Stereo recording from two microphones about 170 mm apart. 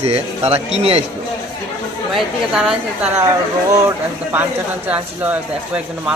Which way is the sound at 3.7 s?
15° right (ahead or behind).